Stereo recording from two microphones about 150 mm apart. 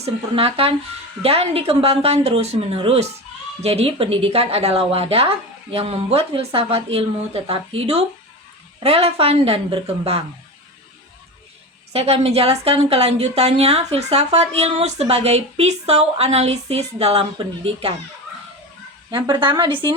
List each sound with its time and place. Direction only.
0.0 s speech: 40° right (ahead or behind)
11.9 s a woman's voice: 40° right (ahead or behind)
19.1 s speech: 35° right (ahead or behind)